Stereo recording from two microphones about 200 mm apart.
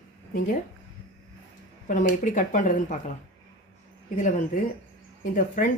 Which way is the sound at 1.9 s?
40° left (ahead or behind).